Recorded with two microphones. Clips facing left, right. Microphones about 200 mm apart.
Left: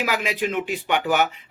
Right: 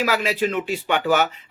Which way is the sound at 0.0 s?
15° left (ahead or behind).